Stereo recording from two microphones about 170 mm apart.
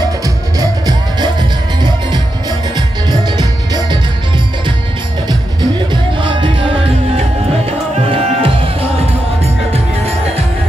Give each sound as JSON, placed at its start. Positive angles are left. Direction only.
{"t": 0.2, "sound": "music", "side_deg": -20}
{"t": 2.7, "sound": "music", "side_deg": -25}
{"t": 5.9, "sound": "music", "side_deg": -30}
{"t": 8.1, "sound": "music", "side_deg": -30}